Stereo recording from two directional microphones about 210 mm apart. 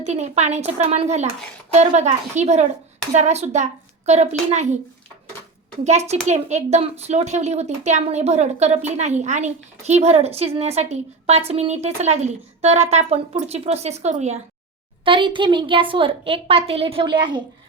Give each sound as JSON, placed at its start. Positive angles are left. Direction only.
{"t": 0.0, "sound": "a woman's voice", "side_deg": -30}
{"t": 5.8, "sound": "a woman's voice", "side_deg": -30}